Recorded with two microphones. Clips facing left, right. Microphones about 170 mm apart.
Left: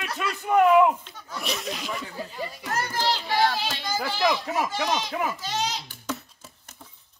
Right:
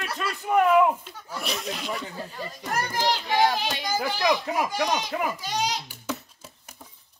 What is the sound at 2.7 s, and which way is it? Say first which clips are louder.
A child's voice: right 1 dB; 15° right (ahead or behind).